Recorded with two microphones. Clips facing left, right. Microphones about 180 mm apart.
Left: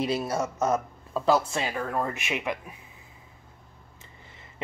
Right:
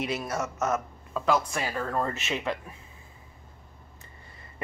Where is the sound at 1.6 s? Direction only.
15° left (ahead or behind).